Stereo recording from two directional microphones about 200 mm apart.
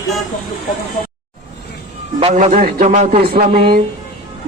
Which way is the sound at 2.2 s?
35° right (ahead or behind).